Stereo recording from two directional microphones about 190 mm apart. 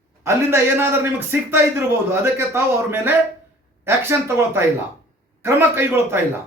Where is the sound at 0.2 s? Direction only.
15° right (ahead or behind).